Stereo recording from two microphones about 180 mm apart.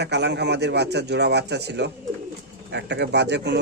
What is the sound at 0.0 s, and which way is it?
Speech, 70° right (ahead or behind).